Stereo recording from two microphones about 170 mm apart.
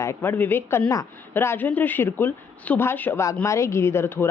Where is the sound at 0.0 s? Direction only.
15° left (ahead or behind).